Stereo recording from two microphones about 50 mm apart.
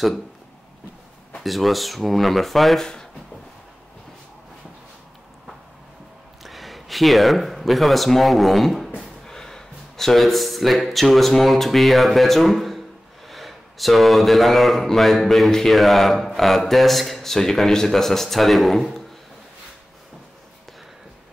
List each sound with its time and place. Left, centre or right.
1.4 s speech: centre
2.8 s speech: centre
6.4 s speech: centre